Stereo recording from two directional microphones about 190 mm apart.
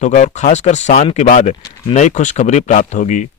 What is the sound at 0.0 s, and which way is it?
Speech, 40° left (ahead or behind).